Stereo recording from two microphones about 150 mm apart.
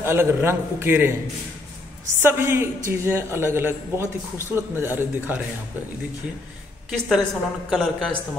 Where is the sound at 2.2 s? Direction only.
15° right (ahead or behind).